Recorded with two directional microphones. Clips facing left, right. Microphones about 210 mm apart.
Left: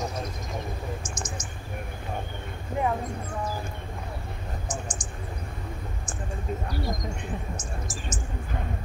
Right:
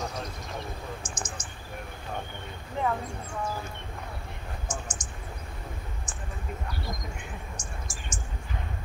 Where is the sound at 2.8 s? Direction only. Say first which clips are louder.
Left 2 dB; 10° left (ahead or behind).